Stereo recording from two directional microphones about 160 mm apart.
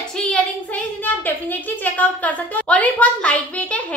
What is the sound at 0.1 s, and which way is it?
A woman's voice, 5° left (ahead or behind).